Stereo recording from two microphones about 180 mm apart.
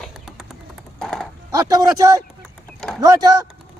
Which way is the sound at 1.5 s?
20° right (ahead or behind).